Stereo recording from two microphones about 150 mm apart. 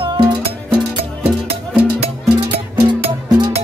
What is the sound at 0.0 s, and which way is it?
Music, 30° right (ahead or behind).